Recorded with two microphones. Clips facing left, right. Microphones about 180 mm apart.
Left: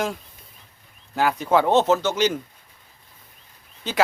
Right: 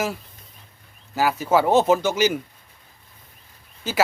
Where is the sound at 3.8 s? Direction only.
5° right (ahead or behind).